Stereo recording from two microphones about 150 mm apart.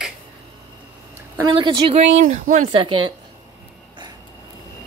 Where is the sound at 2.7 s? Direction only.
35° right (ahead or behind).